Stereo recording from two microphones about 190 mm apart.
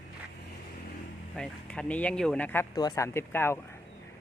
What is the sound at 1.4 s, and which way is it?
Speech, 5° left (ahead or behind).